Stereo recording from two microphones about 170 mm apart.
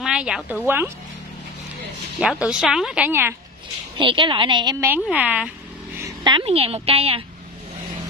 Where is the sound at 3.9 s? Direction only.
30° right (ahead or behind).